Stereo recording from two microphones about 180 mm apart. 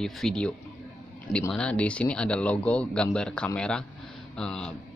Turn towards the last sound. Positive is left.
turn(degrees=5)  # may be behind; listen again after turning